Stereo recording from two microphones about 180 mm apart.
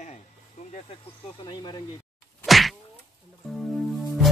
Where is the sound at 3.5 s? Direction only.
Centre (ahead or behind).